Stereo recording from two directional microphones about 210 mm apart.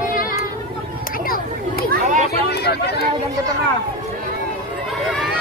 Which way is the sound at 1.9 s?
35° right (ahead or behind).